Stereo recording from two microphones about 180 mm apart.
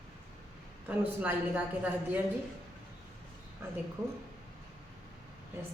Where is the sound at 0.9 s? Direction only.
10° right (ahead or behind).